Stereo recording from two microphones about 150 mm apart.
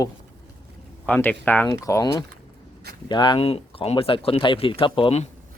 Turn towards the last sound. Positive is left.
turn(degrees=40)  # may be behind; listen again after turning